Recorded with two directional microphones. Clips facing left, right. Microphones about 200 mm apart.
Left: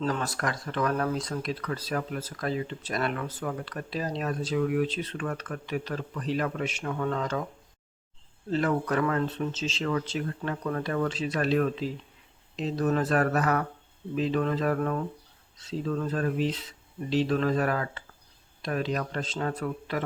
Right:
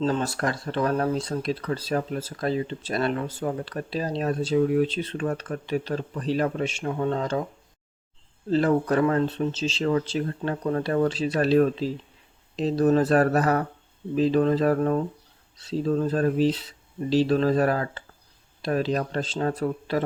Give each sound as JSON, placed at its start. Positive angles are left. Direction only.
{"t": 0.0, "sound": "speech", "side_deg": -25}
{"t": 8.4, "sound": "speech", "side_deg": -30}